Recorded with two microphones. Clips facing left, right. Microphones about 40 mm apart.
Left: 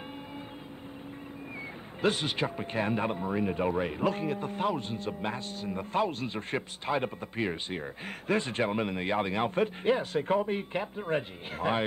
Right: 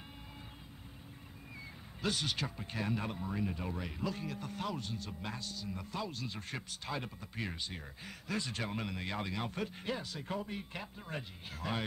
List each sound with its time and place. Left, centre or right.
2.0 s speech: left